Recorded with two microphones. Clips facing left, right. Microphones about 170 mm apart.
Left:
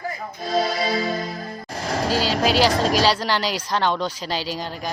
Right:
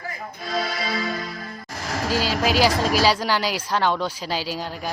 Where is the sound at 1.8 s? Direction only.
35° left (ahead or behind).